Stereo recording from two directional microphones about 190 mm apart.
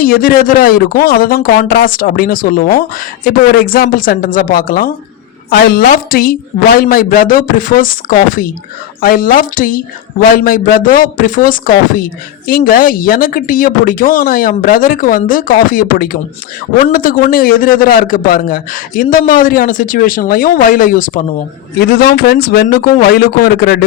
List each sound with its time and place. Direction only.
0.0 s a woman's voice: 50° left (ahead or behind)
21.8 s a man's voice: 55° left (ahead or behind)